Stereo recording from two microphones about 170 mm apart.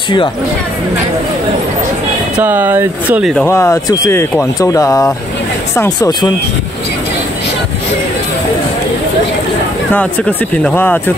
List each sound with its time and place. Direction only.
2.3 s speech: 10° right (ahead or behind)
3.3 s speech: 15° left (ahead or behind)
9.9 s speech: 5° left (ahead or behind)